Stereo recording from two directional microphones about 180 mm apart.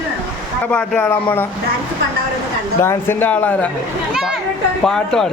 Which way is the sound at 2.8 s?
15° left (ahead or behind).